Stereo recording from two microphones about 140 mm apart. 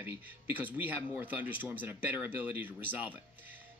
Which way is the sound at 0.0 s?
15° right (ahead or behind).